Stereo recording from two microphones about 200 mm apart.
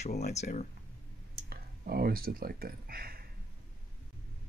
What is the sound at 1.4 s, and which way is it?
Speech, 50° right (ahead or behind).